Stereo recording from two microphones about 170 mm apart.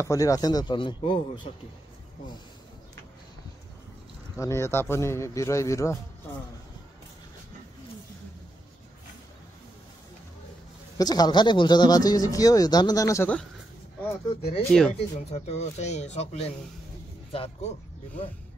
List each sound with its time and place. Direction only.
0.0 s speech: 20° left (ahead or behind)
4.4 s speech: 15° left (ahead or behind)
11.0 s speech: 25° left (ahead or behind)
14.7 s speech: 5° left (ahead or behind)
15.3 s speech: 40° left (ahead or behind)